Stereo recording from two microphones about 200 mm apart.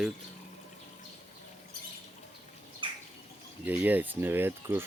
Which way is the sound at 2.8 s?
25° right (ahead or behind).